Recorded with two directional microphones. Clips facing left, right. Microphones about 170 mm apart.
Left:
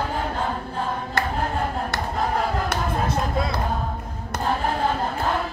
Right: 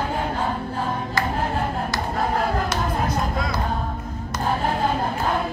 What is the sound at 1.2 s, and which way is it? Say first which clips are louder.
Choir: even; 60° left (ahead or behind).